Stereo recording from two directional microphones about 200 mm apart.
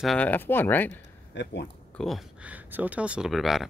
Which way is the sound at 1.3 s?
60° left (ahead or behind).